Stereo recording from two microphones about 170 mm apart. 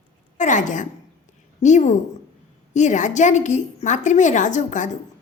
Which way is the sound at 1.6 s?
45° left (ahead or behind).